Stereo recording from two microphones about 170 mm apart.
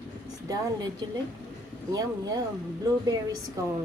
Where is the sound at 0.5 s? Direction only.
20° right (ahead or behind).